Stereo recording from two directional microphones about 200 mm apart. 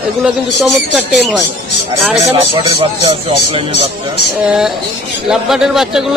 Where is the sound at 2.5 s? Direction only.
25° right (ahead or behind).